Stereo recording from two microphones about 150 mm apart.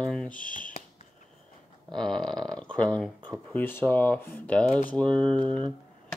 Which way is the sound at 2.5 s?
5° left (ahead or behind).